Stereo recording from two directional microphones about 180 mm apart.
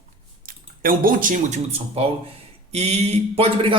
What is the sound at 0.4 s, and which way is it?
Speech, 50° right (ahead or behind).